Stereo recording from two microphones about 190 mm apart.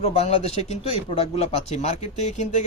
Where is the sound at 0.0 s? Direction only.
35° left (ahead or behind).